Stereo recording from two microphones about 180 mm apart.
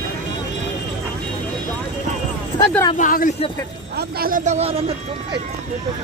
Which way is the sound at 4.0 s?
55° right (ahead or behind).